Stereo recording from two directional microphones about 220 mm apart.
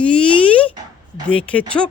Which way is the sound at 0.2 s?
5° left (ahead or behind).